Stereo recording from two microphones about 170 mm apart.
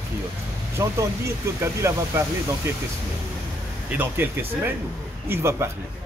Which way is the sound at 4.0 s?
10° right (ahead or behind).